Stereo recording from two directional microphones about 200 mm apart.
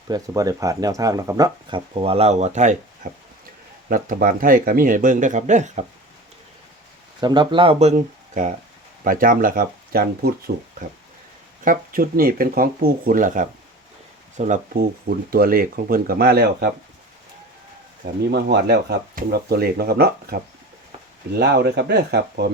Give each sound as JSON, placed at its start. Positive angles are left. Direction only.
{"t": 0.1, "sound": "speech", "side_deg": -15}
{"t": 7.2, "sound": "speech", "side_deg": -20}
{"t": 18.0, "sound": "speech", "side_deg": -55}